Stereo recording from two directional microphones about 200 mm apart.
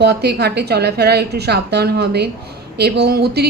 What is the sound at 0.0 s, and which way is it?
A woman's voice, 55° right (ahead or behind).